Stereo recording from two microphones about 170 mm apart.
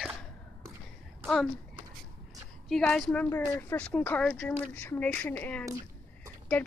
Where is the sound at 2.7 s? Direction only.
5° left (ahead or behind).